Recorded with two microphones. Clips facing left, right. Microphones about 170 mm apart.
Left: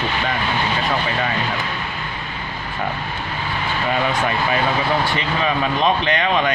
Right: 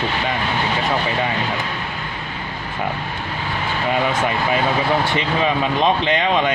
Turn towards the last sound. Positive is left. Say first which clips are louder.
# right 1 dB
turn(degrees=-20)  # may be behind; listen again after turning